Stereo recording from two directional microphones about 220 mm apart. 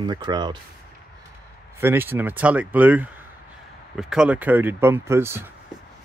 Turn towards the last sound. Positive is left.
turn(degrees=-10)  # may be behind; listen again after turning